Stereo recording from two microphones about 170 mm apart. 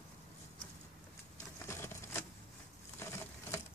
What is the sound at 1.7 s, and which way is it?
Typewriter, 15° left (ahead or behind).